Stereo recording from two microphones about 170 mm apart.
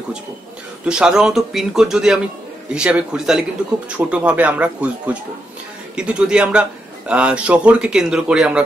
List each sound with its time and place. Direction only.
0.8 s speech: 5° right (ahead or behind)